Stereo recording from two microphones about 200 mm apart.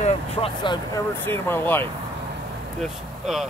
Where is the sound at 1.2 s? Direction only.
10° left (ahead or behind).